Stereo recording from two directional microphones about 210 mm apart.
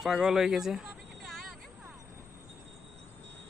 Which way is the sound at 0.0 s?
Centre (ahead or behind).